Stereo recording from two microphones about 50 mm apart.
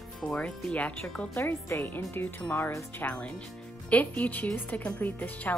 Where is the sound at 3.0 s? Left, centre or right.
Left.